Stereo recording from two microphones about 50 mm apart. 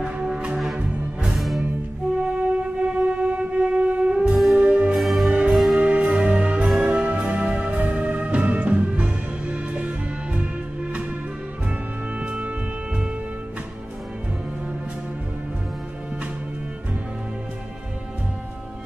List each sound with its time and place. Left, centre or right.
0.0 s music: centre
1.3 s music: centre
2.2 s train: right
4.1 s music: centre
4.9 s music: centre
5.8 s music: right
12.2 s music: right